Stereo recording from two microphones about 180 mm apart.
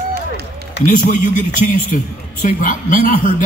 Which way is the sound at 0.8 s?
80° left.